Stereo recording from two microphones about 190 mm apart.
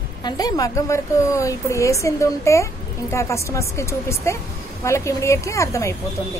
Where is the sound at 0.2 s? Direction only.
20° left (ahead or behind).